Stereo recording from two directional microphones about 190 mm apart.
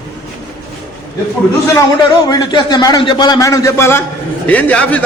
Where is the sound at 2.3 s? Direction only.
20° left (ahead or behind).